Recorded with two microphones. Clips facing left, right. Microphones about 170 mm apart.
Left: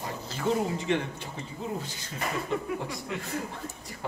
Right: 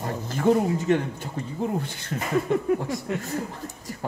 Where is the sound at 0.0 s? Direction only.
50° right (ahead or behind).